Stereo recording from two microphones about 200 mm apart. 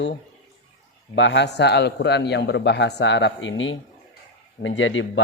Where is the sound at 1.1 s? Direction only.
65° left (ahead or behind).